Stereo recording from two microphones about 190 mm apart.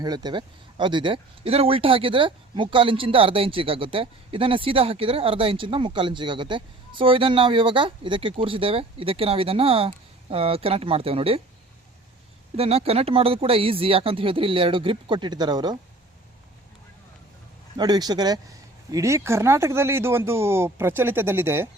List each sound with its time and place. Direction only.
0.0 s speech: 20° right (ahead or behind)
12.5 s speech: 30° right (ahead or behind)
17.7 s speech: 20° right (ahead or behind)